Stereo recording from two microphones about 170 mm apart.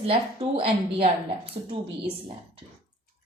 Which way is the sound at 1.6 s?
35° right (ahead or behind).